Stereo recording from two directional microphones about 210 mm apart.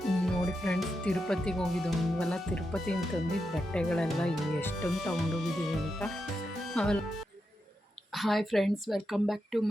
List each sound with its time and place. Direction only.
0.0 s speech: centre (ahead or behind)
8.1 s speech: centre (ahead or behind)